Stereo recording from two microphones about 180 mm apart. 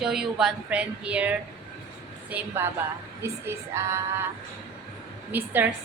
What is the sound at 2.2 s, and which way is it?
Speech, 10° right (ahead or behind).